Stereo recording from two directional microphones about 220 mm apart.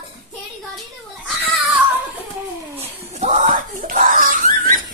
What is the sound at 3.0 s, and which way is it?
Speech, 30° right (ahead or behind).